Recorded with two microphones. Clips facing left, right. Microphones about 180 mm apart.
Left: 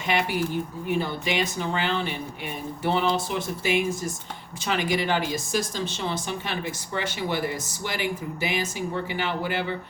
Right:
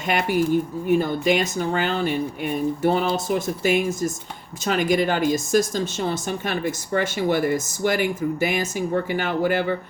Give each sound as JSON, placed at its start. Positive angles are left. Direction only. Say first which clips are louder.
{"t": 0.1, "sound": "speech", "louder": "right 5 dB", "side_deg": -45}